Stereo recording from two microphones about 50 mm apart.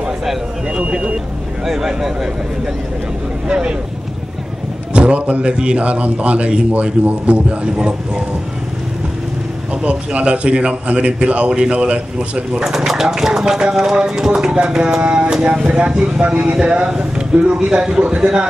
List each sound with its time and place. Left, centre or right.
0.7 s a man's voice: right
1.7 s speech: centre
3.4 s a man's voice: centre
4.9 s a man's voice: right
9.8 s a man's voice: right
12.6 s a man's voice: centre